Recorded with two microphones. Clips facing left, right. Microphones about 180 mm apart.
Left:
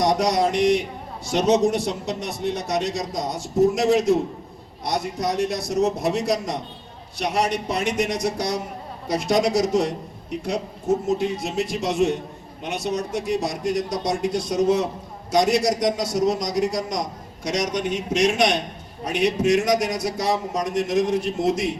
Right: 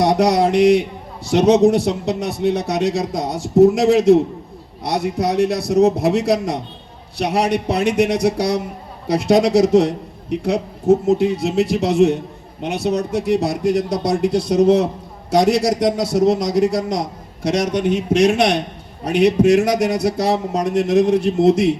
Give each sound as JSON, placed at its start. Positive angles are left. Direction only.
{"t": 0.0, "sound": "a man's voice", "side_deg": -65}